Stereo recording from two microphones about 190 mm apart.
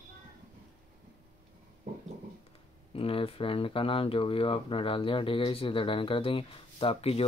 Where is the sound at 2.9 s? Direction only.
30° left (ahead or behind).